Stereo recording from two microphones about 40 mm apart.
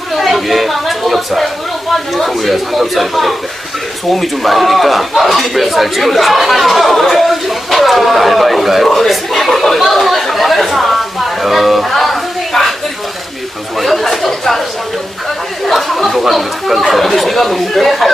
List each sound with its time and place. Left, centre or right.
0.1 s speech: centre
13.7 s speech: centre
15.6 s speech: centre